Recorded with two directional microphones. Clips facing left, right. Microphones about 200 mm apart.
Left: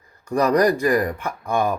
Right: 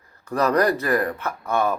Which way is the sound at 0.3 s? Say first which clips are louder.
Left 2 dB; 15° left (ahead or behind).